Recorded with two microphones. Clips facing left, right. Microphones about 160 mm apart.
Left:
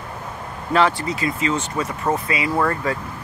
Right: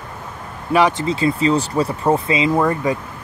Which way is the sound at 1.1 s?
30° right (ahead or behind).